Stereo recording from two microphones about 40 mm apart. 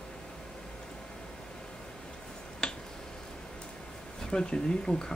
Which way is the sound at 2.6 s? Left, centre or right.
Centre.